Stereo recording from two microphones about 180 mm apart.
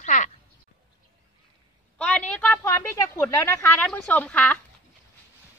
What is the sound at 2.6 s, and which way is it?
Speech, 15° left (ahead or behind).